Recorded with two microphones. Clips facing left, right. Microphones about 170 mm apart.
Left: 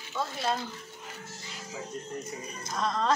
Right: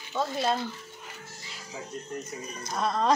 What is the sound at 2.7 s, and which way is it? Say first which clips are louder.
Speech: right 3 dB; 10° right (ahead or behind).